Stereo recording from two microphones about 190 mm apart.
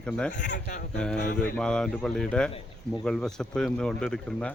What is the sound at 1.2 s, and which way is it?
Mantra, 50° left (ahead or behind).